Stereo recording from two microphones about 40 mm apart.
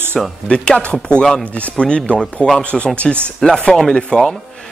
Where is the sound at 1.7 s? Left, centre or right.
Left.